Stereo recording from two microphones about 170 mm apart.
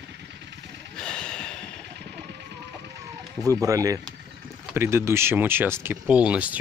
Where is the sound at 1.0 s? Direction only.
5° left (ahead or behind).